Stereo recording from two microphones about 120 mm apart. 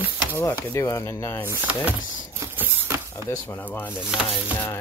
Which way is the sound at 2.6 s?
15° right (ahead or behind).